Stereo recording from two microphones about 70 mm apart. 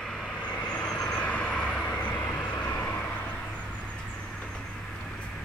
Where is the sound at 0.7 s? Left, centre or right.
Centre.